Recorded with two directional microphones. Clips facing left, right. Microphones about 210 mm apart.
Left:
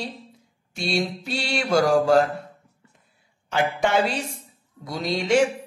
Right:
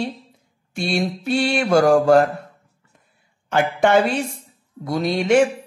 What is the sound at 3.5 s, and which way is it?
Speech, 55° right (ahead or behind).